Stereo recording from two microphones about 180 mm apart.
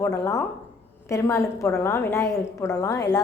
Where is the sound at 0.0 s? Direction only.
15° left (ahead or behind).